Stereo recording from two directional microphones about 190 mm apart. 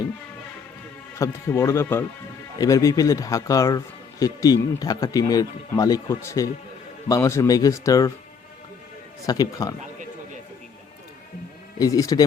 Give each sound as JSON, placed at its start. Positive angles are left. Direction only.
{"t": 1.2, "sound": "speech", "side_deg": 15}
{"t": 9.2, "sound": "speech", "side_deg": 20}
{"t": 11.8, "sound": "speech", "side_deg": 20}